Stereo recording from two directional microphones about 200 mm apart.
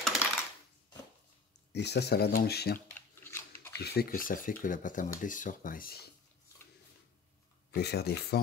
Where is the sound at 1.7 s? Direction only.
55° left (ahead or behind).